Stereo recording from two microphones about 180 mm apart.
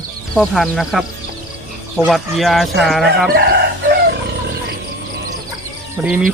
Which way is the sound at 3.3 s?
60° right (ahead or behind).